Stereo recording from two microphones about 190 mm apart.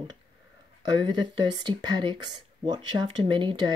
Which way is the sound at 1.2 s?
25° right (ahead or behind).